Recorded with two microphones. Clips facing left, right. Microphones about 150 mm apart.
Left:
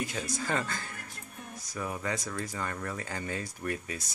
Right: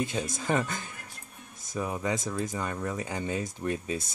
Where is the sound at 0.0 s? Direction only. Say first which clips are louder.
Right 3 dB; 20° right (ahead or behind).